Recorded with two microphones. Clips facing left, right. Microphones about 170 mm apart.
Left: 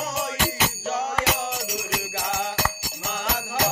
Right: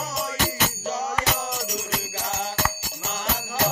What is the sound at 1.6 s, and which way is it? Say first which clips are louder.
Music: even; 10° left (ahead or behind).